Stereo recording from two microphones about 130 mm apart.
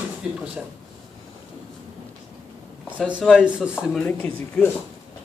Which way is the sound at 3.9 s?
10° left (ahead or behind).